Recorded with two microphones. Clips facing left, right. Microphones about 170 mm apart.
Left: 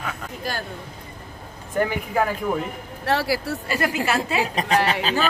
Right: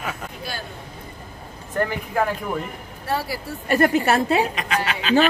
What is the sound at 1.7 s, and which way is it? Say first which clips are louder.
Speech: left 1 dB; 5° left (ahead or behind).